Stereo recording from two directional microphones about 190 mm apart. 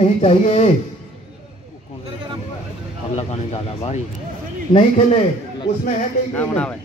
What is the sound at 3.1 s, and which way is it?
Speech, 35° left (ahead or behind).